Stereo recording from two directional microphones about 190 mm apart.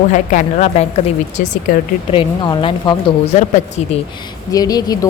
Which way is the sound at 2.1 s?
25° left (ahead or behind).